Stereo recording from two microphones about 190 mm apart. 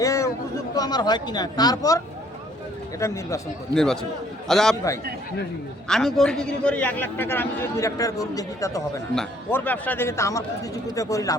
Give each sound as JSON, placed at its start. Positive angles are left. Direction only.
{"t": 0.0, "sound": "a sound", "side_deg": 15}
{"t": 0.8, "sound": "speech", "side_deg": 20}
{"t": 3.0, "sound": "a man's voice", "side_deg": 15}
{"t": 4.4, "sound": "a man's voice", "side_deg": 0}
{"t": 5.9, "sound": "a man's voice", "side_deg": 0}